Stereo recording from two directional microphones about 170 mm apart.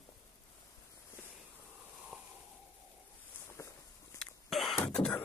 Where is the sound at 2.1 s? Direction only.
5° right (ahead or behind).